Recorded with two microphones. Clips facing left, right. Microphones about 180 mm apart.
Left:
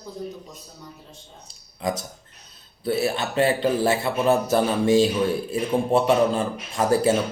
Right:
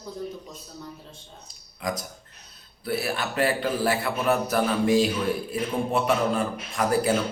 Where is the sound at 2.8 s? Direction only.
25° left (ahead or behind).